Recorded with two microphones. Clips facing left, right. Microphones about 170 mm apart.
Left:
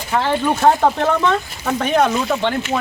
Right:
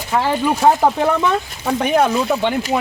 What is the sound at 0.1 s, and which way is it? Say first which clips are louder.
Speech: even; 5° right (ahead or behind).